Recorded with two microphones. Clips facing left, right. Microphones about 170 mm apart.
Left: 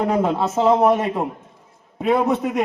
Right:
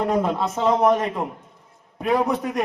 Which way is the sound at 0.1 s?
5° left (ahead or behind).